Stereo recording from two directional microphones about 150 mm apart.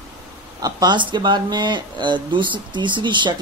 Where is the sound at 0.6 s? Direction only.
25° right (ahead or behind).